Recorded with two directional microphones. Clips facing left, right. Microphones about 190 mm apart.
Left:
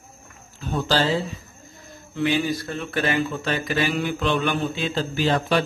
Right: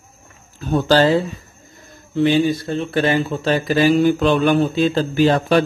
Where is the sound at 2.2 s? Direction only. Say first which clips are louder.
Right 7 dB; 30° right (ahead or behind); by 5.6 s 50° right (ahead or behind).